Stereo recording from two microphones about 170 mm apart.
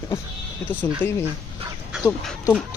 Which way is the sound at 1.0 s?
10° left (ahead or behind).